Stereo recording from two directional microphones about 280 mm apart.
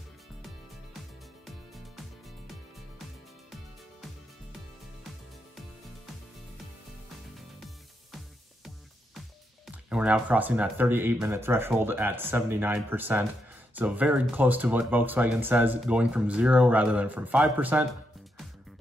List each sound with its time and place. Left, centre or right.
7.3 s music: centre
9.7 s speech: centre